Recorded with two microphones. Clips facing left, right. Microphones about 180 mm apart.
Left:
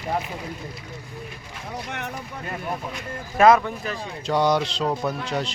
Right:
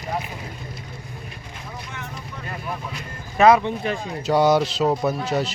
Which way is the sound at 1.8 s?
65° left (ahead or behind).